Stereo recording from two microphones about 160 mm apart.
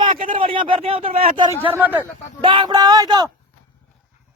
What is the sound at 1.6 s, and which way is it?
Speech, 10° right (ahead or behind).